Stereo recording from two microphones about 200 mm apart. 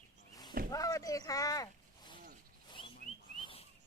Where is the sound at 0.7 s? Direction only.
15° left (ahead or behind).